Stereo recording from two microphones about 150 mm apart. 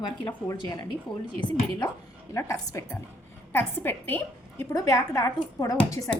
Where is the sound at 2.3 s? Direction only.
20° left (ahead or behind).